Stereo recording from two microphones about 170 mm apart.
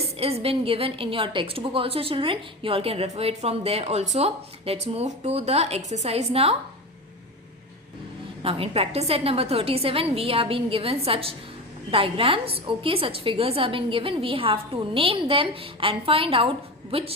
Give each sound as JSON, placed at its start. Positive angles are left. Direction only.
{"t": 0.0, "sound": "a woman's voice", "side_deg": -35}
{"t": 8.4, "sound": "a woman's voice", "side_deg": -35}